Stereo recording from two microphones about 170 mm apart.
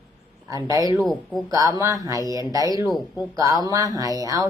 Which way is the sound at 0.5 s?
20° right (ahead or behind).